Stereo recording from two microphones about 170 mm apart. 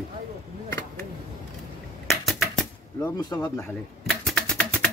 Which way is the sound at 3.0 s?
25° left (ahead or behind).